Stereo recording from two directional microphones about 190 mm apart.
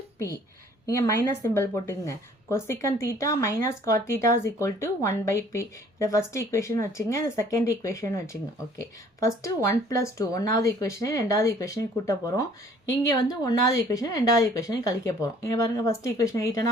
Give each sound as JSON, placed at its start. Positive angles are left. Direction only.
{"t": 0.9, "sound": "a woman's voice", "side_deg": 15}